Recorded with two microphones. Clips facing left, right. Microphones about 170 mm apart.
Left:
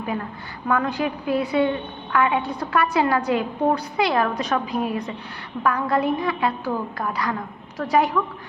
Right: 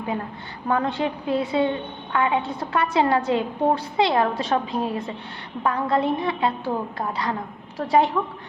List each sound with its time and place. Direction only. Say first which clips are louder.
0.7 s a woman's voice: even; 25° right (ahead or behind)